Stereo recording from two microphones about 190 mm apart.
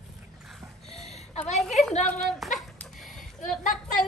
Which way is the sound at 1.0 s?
35° left (ahead or behind).